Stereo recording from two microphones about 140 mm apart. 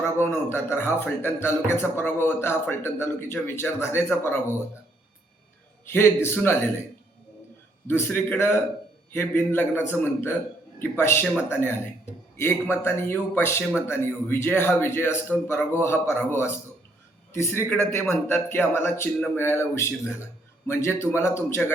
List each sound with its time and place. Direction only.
0.2 s a man's voice: 15° left (ahead or behind)
5.9 s a man's voice: 15° left (ahead or behind)
7.9 s a man's voice: 15° left (ahead or behind)